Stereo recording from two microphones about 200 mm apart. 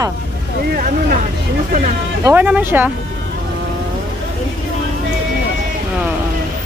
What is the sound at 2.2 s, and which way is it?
Speech, 10° right (ahead or behind).